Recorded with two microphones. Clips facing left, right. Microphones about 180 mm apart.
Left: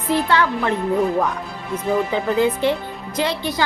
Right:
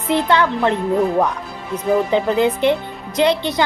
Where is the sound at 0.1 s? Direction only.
20° right (ahead or behind).